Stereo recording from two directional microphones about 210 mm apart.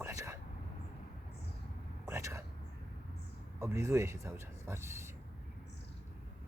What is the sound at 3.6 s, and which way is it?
Speech, 15° right (ahead or behind).